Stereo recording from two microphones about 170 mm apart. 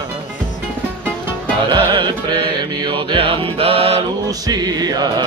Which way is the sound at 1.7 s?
25° right (ahead or behind).